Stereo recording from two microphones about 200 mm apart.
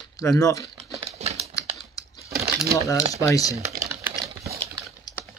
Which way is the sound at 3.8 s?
15° right (ahead or behind).